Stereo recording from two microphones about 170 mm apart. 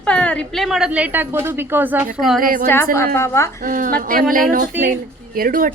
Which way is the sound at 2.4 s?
55° right (ahead or behind).